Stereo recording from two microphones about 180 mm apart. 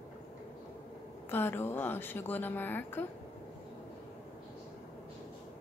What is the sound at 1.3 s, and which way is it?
Speech, 10° left (ahead or behind).